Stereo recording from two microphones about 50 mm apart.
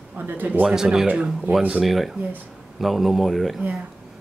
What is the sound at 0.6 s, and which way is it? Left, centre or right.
Speech, centre.